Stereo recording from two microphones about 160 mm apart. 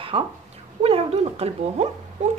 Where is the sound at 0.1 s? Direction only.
35° right (ahead or behind).